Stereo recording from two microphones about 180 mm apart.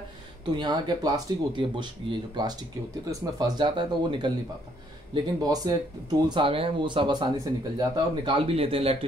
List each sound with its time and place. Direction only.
0.6 s speech: 25° right (ahead or behind)